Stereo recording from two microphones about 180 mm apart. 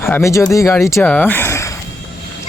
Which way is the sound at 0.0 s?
15° left (ahead or behind).